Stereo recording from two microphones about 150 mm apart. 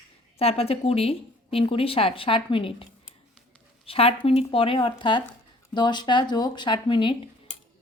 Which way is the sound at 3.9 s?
40° left (ahead or behind).